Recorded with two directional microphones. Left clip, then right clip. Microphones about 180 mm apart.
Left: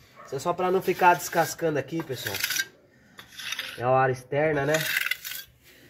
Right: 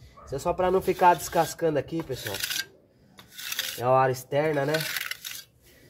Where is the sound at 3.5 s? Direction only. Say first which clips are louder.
Right 1 dB; 20° right (ahead or behind).